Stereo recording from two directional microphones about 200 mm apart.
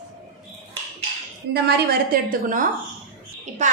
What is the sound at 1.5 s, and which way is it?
Speech, 55° right (ahead or behind).